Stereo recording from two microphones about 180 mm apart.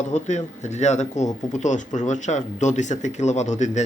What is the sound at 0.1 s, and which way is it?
A man's voice, 40° left (ahead or behind).